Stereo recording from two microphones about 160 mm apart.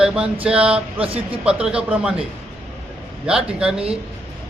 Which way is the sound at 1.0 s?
35° right (ahead or behind).